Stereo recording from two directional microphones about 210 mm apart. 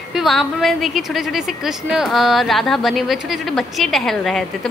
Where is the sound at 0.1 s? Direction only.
Centre (ahead or behind).